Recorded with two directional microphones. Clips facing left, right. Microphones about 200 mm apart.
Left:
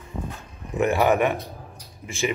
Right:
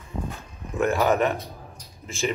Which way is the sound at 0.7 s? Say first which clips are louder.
Left 1 dB; 15° left (ahead or behind).